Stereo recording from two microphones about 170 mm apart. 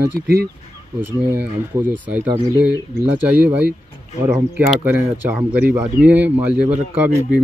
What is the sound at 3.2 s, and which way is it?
Speech, 10° right (ahead or behind).